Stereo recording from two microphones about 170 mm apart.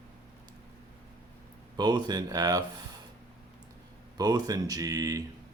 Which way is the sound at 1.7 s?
25° right (ahead or behind).